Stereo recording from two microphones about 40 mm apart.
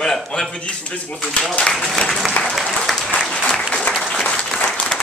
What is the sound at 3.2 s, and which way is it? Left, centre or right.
Applause, centre.